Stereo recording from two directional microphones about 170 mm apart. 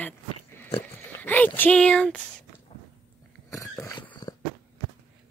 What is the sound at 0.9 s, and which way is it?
Speech, 10° left (ahead or behind).